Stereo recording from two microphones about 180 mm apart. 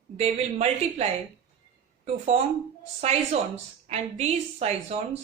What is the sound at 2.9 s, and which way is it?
Speech, 35° right (ahead or behind).